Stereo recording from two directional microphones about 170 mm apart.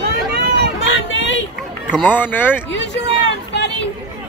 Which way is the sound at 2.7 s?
90° left.